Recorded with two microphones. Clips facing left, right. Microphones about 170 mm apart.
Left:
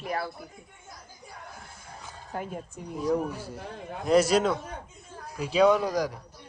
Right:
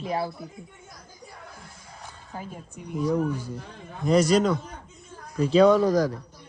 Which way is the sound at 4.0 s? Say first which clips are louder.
Right 2 dB; 5° left (ahead or behind).